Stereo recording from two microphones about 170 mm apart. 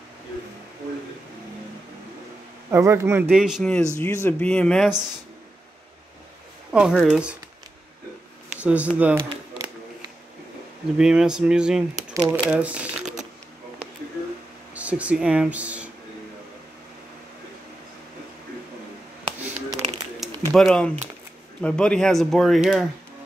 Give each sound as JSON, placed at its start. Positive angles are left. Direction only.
{"t": 2.7, "sound": "speech", "side_deg": -15}
{"t": 4.0, "sound": "speech", "side_deg": 15}
{"t": 6.7, "sound": "speech", "side_deg": -5}
{"t": 8.5, "sound": "a sound", "side_deg": -5}
{"t": 8.9, "sound": "speech", "side_deg": -10}
{"t": 11.0, "sound": "speech", "side_deg": -5}
{"t": 12.1, "sound": "speech", "side_deg": -20}
{"t": 12.4, "sound": "speech", "side_deg": -5}
{"t": 14.7, "sound": "speech", "side_deg": -10}
{"t": 19.7, "sound": "a sound", "side_deg": 0}
{"t": 21.5, "sound": "speech", "side_deg": 5}